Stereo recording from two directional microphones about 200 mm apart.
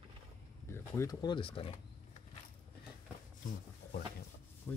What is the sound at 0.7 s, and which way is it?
Speech, 15° left (ahead or behind).